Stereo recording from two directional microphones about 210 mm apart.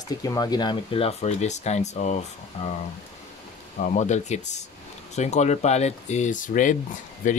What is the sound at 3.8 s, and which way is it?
Speech, 35° left (ahead or behind).